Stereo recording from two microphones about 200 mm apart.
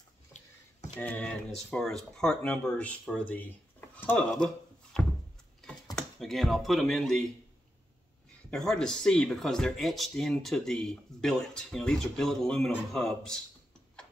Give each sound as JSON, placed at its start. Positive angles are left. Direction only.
{"t": 0.9, "sound": "speech", "side_deg": 10}
{"t": 5.9, "sound": "speech", "side_deg": 0}
{"t": 8.5, "sound": "speech", "side_deg": 5}